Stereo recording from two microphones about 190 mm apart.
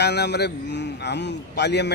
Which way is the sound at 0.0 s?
60° left (ahead or behind).